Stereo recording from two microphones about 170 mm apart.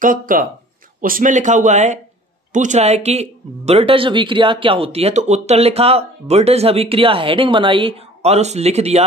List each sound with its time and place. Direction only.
0.0 s speech: 55° right (ahead or behind)